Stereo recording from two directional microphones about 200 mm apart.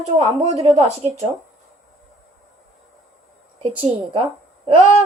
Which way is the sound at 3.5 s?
30° right (ahead or behind).